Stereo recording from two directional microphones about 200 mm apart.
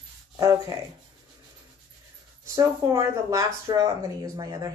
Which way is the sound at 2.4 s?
15° right (ahead or behind).